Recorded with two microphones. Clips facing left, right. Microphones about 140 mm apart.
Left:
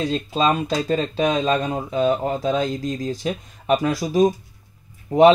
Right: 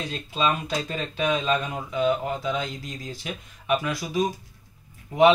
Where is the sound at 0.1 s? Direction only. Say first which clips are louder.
Left 6 dB; 35° left (ahead or behind).